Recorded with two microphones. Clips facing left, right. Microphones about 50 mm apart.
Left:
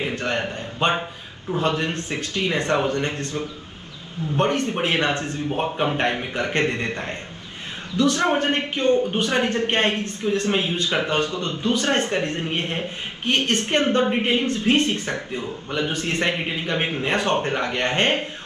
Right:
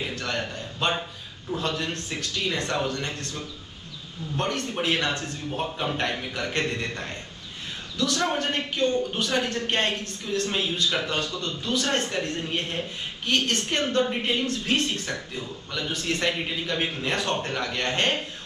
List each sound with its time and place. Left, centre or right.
0.0 s a man's voice: left